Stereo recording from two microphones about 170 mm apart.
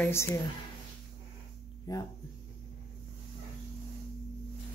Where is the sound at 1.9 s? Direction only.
20° left (ahead or behind).